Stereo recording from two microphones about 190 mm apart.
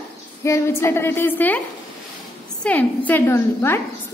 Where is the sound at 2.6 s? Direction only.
10° left (ahead or behind).